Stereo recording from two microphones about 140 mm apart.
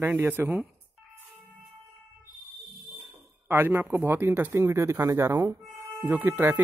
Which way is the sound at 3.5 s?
15° right (ahead or behind).